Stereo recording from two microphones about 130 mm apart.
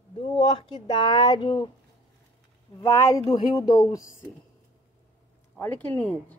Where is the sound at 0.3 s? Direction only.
40° left (ahead or behind).